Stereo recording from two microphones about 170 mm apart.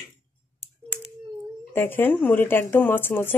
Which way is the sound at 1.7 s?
10° left (ahead or behind).